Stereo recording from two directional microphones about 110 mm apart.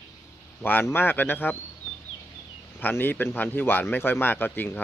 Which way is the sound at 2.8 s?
20° left (ahead or behind).